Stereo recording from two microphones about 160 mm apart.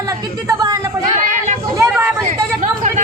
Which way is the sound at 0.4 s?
20° right (ahead or behind).